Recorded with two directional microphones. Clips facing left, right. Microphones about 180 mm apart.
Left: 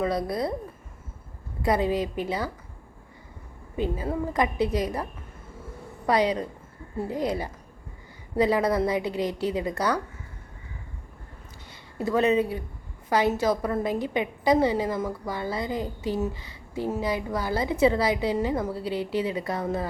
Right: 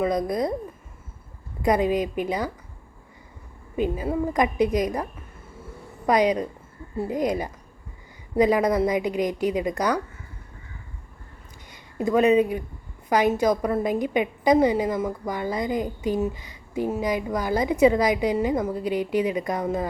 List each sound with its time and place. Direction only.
0.0 s a woman's voice: 15° right (ahead or behind)
1.6 s a woman's voice: 15° right (ahead or behind)
3.8 s a woman's voice: 15° right (ahead or behind)
6.1 s a woman's voice: 15° right (ahead or behind)
11.7 s a woman's voice: 15° right (ahead or behind)